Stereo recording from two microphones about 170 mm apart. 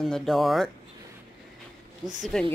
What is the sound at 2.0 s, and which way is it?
Speech, centre (ahead or behind).